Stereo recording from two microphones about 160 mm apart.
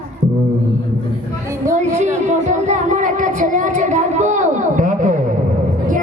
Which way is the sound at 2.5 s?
50° right (ahead or behind).